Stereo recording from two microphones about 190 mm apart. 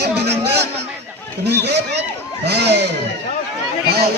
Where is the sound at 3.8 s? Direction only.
55° right (ahead or behind).